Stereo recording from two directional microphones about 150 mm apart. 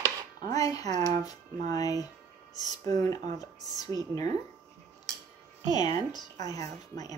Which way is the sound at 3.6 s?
25° left (ahead or behind).